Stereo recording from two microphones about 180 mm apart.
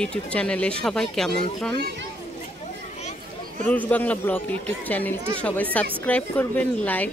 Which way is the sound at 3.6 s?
10° left (ahead or behind).